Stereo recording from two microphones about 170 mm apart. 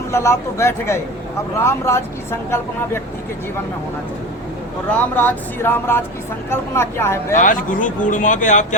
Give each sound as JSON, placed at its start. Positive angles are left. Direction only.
{"t": 0.1, "sound": "speech", "side_deg": 15}
{"t": 4.9, "sound": "speech", "side_deg": 10}
{"t": 7.3, "sound": "speech", "side_deg": 50}